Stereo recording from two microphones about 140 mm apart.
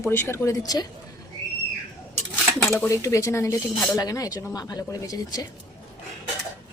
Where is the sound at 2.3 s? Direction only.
15° left (ahead or behind).